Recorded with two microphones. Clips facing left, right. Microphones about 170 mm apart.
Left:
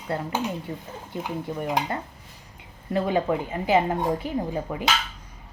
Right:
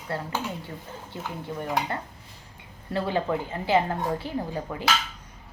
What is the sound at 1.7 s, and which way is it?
A woman's voice, 20° left (ahead or behind).